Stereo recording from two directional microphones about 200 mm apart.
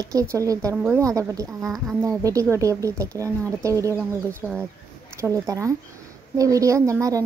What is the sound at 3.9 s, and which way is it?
Speech, 5° right (ahead or behind).